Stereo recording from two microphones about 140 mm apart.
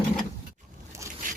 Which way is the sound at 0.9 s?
20° right (ahead or behind).